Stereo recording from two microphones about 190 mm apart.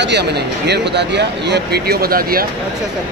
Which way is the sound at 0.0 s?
65° right (ahead or behind).